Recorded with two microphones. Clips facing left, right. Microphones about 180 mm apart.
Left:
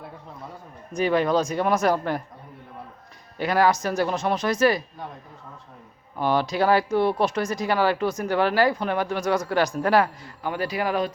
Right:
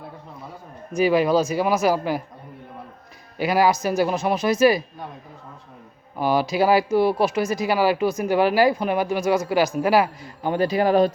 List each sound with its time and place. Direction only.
0.9 s speech: 10° right (ahead or behind)
3.3 s speech: 10° right (ahead or behind)
6.1 s speech: 10° right (ahead or behind)
10.4 s a man's voice: 25° right (ahead or behind)